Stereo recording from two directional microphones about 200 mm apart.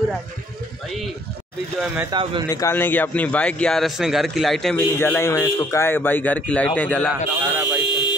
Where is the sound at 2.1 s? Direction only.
25° right (ahead or behind).